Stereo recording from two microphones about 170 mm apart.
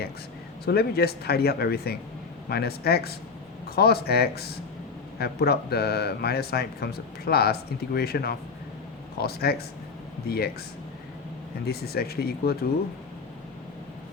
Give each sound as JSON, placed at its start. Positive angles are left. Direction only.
{"t": 0.6, "sound": "speech", "side_deg": 65}
{"t": 11.6, "sound": "speech", "side_deg": 65}